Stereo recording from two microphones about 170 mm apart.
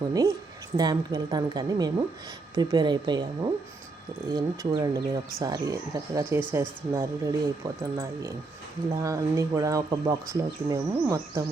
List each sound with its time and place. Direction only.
0.1 s speech: 20° right (ahead or behind)